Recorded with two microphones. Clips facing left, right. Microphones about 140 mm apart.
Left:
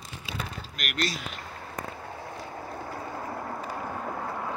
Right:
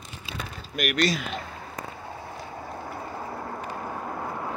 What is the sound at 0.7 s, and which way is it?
Speech, 90° right.